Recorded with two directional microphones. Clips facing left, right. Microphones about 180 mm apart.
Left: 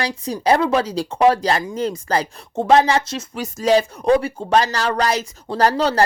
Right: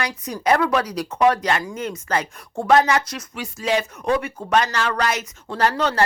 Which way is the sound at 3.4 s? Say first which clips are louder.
Left 6 dB; 40° left (ahead or behind).